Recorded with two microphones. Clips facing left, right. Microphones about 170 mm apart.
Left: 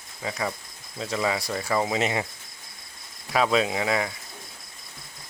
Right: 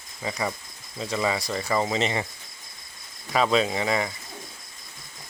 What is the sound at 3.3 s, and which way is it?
Speech, 5° left (ahead or behind).